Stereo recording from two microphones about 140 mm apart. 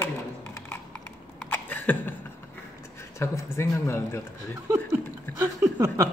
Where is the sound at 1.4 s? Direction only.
15° left (ahead or behind).